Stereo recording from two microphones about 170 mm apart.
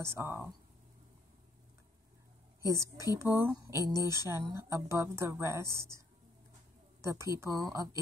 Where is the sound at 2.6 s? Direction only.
15° right (ahead or behind).